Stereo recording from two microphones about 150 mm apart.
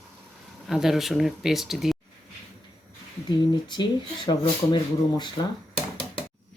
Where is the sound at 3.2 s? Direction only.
30° left (ahead or behind).